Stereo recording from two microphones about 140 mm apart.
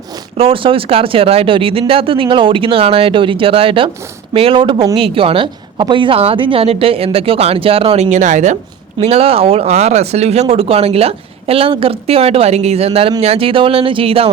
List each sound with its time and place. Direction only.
0.3 s speech: 40° right (ahead or behind); by 8.5 s 60° right (ahead or behind)
9.0 s speech: 45° right (ahead or behind)